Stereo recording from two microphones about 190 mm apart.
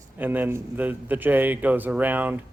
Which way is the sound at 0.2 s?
10° right (ahead or behind).